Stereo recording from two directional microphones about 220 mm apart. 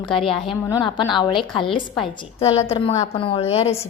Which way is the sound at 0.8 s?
20° left (ahead or behind).